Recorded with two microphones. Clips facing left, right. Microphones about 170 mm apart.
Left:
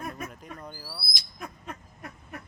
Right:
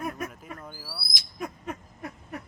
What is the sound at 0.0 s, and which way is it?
Owl, 5° right (ahead or behind).